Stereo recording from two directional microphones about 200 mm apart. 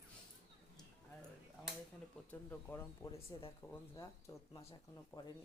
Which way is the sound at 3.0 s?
25° left (ahead or behind).